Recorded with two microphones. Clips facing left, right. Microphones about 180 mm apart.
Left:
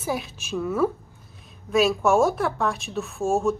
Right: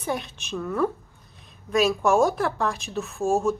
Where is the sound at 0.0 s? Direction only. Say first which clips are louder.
Left 1 dB; 5° left (ahead or behind).